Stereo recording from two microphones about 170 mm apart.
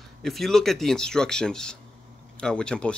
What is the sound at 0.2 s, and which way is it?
Speech, centre (ahead or behind).